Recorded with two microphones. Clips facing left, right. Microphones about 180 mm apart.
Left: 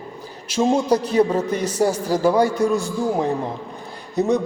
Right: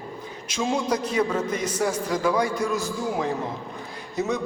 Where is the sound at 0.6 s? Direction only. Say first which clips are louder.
Left 7 dB; 40° left (ahead or behind).